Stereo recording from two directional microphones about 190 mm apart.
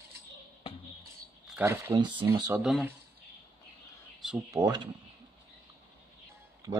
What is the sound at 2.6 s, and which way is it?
Speech, 5° right (ahead or behind).